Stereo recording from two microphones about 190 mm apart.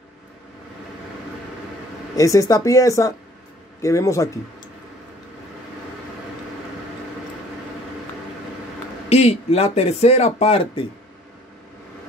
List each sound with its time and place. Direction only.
2.1 s speech: 15° left (ahead or behind)
9.1 s speech: 35° left (ahead or behind)